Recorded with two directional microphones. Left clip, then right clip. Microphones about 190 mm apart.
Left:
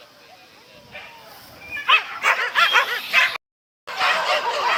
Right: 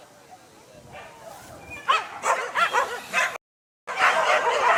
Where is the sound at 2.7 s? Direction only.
10° right (ahead or behind).